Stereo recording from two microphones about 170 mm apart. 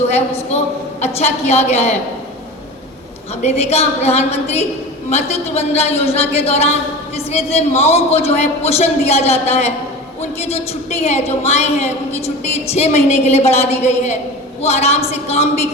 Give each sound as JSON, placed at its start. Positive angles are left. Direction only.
{"t": 0.1, "sound": "a man's voice", "side_deg": 40}
{"t": 3.4, "sound": "a man's voice", "side_deg": 40}